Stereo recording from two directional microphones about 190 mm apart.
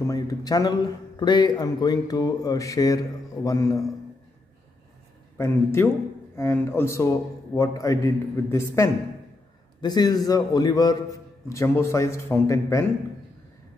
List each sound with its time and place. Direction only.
0.0 s a man's voice: 20° left (ahead or behind)
5.4 s a man's voice: 15° left (ahead or behind)